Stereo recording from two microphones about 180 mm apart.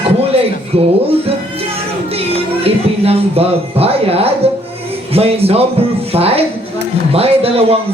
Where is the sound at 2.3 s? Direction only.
35° right (ahead or behind).